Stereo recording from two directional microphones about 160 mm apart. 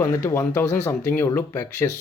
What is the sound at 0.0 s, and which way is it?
Speech, 15° left (ahead or behind).